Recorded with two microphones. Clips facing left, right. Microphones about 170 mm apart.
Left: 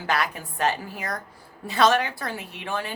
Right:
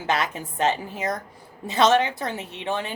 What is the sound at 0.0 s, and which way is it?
A woman's voice, 20° right (ahead or behind).